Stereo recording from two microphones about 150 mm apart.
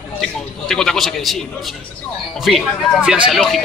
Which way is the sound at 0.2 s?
5° left (ahead or behind).